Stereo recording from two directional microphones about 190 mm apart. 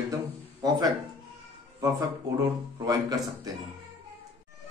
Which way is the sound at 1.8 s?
20° right (ahead or behind).